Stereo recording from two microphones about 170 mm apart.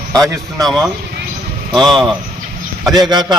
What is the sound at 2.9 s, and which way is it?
Speech, 25° right (ahead or behind).